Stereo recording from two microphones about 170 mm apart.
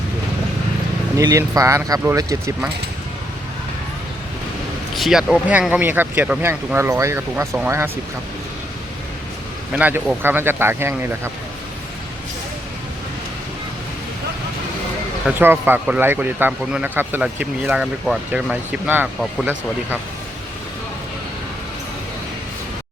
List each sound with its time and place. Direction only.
1.1 s speech: 20° right (ahead or behind)
4.9 s speech: centre (ahead or behind)
9.7 s speech: 10° right (ahead or behind)
15.4 s speech: 10° right (ahead or behind)